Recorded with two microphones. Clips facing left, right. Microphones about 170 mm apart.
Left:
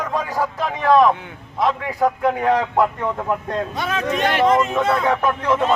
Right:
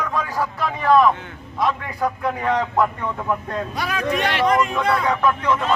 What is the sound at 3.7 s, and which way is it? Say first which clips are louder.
Speech: right 2 dB; 25° left (ahead or behind).